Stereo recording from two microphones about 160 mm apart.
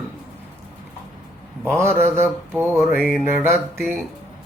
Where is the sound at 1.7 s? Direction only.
15° right (ahead or behind).